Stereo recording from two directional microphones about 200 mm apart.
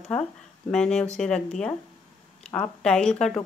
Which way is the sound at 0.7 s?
5° left (ahead or behind).